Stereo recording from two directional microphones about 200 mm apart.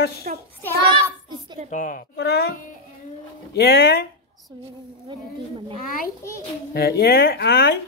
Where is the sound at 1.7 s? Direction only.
40° left (ahead or behind).